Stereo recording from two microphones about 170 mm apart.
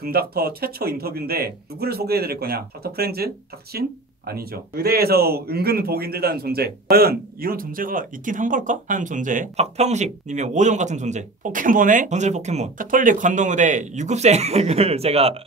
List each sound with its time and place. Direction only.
0.0 s speech: 65° right (ahead or behind)
4.3 s a man's voice: 65° right (ahead or behind); by 15.3 s 35° right (ahead or behind)